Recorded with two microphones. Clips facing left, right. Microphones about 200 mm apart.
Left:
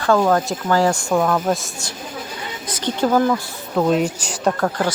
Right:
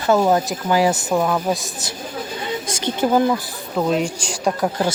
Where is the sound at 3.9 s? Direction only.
5° left (ahead or behind).